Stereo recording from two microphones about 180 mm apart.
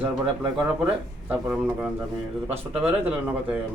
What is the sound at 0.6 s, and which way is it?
Speech, 10° right (ahead or behind).